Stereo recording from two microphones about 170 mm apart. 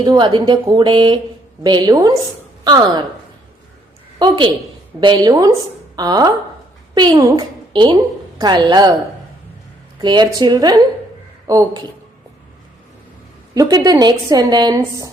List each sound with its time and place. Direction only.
0.0 s a woman's voice: 25° right (ahead or behind)
4.2 s a woman's voice: 30° right (ahead or behind)
10.0 s a woman's voice: 25° right (ahead or behind)
13.5 s a woman's voice: 20° right (ahead or behind)